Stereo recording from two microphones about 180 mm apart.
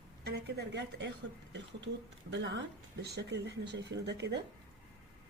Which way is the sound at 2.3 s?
75° right (ahead or behind).